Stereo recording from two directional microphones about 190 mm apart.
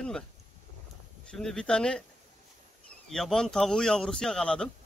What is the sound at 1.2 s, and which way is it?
Speech, centre (ahead or behind).